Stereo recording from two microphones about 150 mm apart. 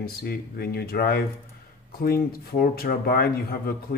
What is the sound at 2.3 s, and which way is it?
Speech, 85° left.